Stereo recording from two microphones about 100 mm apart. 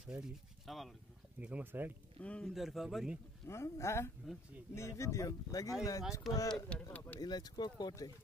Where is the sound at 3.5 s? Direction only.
25° left (ahead or behind).